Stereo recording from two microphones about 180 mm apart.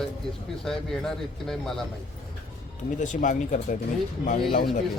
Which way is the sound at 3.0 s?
45° left (ahead or behind).